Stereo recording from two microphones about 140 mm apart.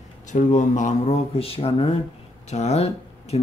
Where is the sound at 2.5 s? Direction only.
50° left (ahead or behind).